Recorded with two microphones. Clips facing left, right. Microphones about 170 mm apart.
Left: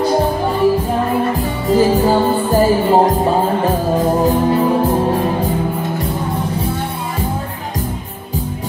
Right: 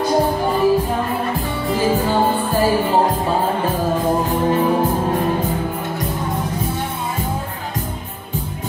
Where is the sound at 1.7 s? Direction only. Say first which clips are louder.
Left 6 dB; 40° left (ahead or behind).